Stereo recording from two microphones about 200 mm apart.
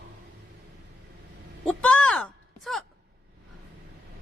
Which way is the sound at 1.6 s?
5° left (ahead or behind).